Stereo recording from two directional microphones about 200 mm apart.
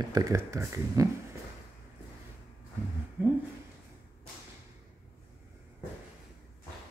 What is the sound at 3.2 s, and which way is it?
Speech, 10° right (ahead or behind).